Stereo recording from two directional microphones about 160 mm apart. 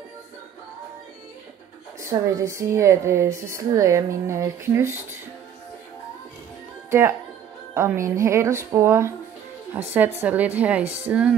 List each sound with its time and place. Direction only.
2.0 s a woman's voice: 20° right (ahead or behind)
6.9 s a woman's voice: 15° right (ahead or behind)